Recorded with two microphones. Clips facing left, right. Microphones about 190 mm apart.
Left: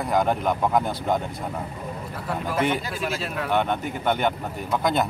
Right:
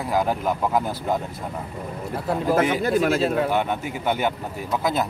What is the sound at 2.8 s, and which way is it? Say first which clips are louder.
Speech: right 9 dB; 55° right (ahead or behind).